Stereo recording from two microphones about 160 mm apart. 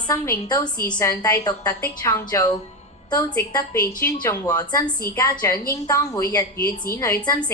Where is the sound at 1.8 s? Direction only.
15° left (ahead or behind).